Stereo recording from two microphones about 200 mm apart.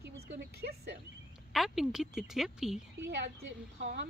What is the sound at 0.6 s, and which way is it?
Speech, 55° right (ahead or behind).